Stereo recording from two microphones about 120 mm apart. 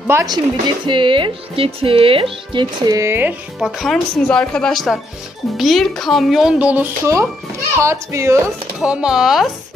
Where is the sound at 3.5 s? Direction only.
Centre (ahead or behind).